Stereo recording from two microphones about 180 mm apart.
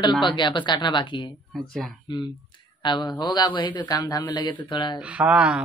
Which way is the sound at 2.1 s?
25° left (ahead or behind).